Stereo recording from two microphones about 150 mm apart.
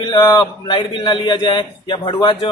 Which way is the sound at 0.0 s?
30° left (ahead or behind).